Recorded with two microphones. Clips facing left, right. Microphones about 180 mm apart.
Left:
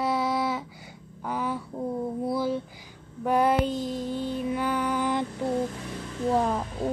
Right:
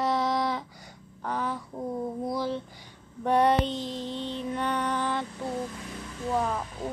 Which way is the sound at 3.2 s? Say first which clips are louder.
Even; 5° left (ahead or behind).